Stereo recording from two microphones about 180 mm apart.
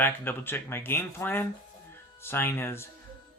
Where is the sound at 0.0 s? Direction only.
10° left (ahead or behind).